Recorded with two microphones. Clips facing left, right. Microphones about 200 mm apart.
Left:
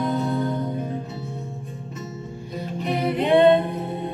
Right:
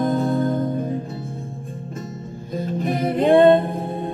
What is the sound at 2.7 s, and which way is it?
Music, 45° right (ahead or behind).